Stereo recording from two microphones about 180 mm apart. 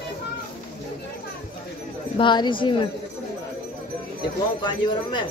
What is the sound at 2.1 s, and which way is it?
Speech, 25° left (ahead or behind).